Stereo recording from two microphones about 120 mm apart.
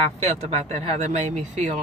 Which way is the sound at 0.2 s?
65° right (ahead or behind).